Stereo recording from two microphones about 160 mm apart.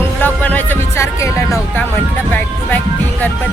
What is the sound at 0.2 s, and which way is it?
Music, 10° left (ahead or behind).